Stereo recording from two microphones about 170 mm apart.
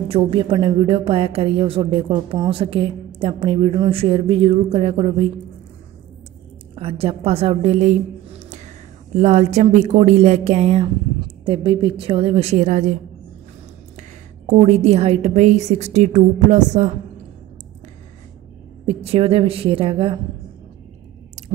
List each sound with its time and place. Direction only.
0.1 s a woman's voice: 35° right (ahead or behind)
6.7 s a woman's voice: 35° right (ahead or behind)
13.9 s a woman's voice: 40° right (ahead or behind)
18.9 s a woman's voice: 35° right (ahead or behind)